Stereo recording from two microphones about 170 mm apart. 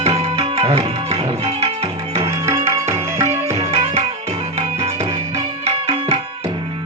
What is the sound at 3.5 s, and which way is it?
Music, 35° right (ahead or behind).